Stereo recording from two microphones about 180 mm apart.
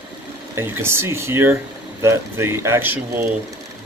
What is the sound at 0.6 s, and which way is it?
Speech, 15° right (ahead or behind).